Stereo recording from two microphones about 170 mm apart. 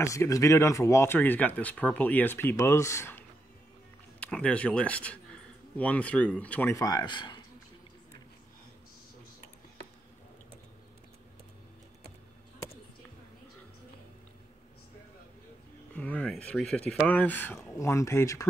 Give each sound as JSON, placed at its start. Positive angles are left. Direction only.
{"t": 0.0, "sound": "speech", "side_deg": 20}
{"t": 15.9, "sound": "speech", "side_deg": 10}